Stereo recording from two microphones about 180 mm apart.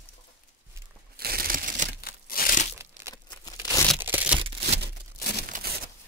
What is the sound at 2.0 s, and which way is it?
Crumpling, 55° left (ahead or behind).